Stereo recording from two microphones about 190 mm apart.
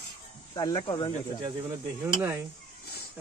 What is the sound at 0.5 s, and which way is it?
Speech, 20° left (ahead or behind).